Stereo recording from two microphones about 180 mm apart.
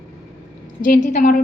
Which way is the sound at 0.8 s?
45° left (ahead or behind).